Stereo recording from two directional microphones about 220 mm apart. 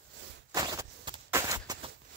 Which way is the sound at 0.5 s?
15° right (ahead or behind).